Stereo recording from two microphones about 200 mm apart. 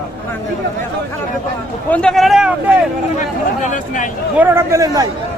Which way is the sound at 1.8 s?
5° left (ahead or behind).